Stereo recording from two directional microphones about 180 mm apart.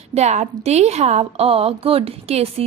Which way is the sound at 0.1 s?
40° right (ahead or behind).